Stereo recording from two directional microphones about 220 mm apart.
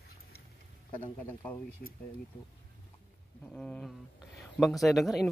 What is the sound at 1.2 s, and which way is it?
Speech, 10° left (ahead or behind).